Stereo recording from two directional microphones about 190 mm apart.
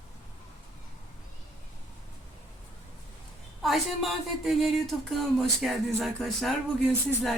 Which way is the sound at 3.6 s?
Centre (ahead or behind).